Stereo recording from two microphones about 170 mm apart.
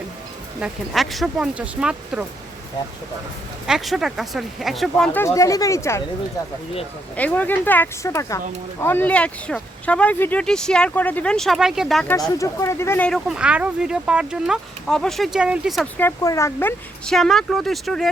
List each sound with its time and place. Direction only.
0.6 s speech: centre (ahead or behind)
3.7 s speech: centre (ahead or behind)
5.2 s speech: 20° left (ahead or behind)
7.2 s speech: 10° left (ahead or behind)
12.3 s speech: 20° left (ahead or behind); by 15.9 s centre (ahead or behind)
16.0 s speech: 15° left (ahead or behind)
17.1 s speech: centre (ahead or behind)